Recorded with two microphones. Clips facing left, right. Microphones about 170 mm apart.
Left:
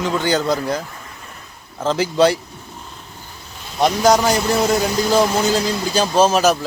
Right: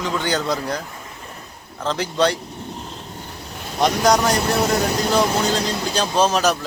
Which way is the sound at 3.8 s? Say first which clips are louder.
Left 2 dB; centre (ahead or behind).